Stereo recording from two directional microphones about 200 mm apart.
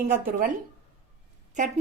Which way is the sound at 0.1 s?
45° right (ahead or behind).